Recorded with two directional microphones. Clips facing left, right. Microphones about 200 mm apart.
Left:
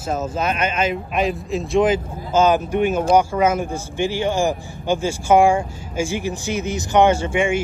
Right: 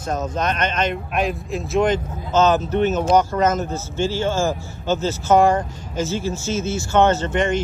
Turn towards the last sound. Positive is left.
turn(degrees=10)  # may be behind; listen again after turning